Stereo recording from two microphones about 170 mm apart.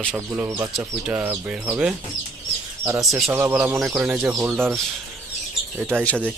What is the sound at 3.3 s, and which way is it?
Speech, 10° right (ahead or behind).